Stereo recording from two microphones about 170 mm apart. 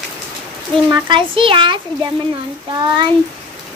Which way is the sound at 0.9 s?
25° right (ahead or behind).